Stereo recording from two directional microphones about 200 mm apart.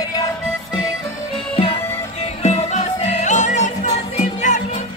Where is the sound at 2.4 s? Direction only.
30° left (ahead or behind).